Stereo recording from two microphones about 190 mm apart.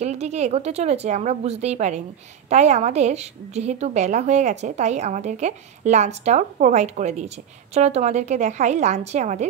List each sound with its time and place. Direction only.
0.0 s a woman's voice: 35° right (ahead or behind)